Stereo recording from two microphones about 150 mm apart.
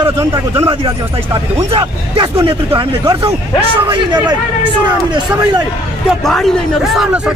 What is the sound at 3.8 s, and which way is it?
Speech, 30° right (ahead or behind).